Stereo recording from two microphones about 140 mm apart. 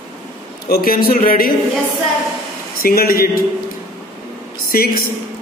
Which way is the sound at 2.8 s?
90° left.